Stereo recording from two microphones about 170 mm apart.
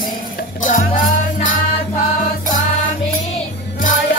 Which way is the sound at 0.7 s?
50° left (ahead or behind).